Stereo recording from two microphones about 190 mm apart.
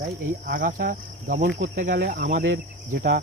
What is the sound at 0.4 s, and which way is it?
Speech, 50° right (ahead or behind).